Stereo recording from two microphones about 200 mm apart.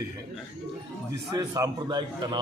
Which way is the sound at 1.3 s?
20° right (ahead or behind).